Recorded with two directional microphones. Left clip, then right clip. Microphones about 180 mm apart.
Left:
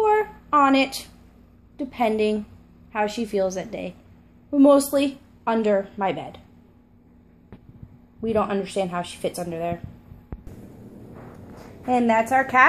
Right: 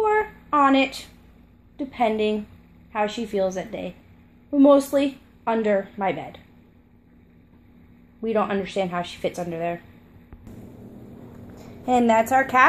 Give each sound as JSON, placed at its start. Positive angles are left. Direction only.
{"t": 0.0, "sound": "a sound", "side_deg": 0}
{"t": 1.8, "sound": "a woman's voice", "side_deg": 0}
{"t": 8.2, "sound": "a woman's voice", "side_deg": 0}
{"t": 11.8, "sound": "a woman's voice", "side_deg": -20}
{"t": 12.2, "sound": "a woman's voice", "side_deg": -5}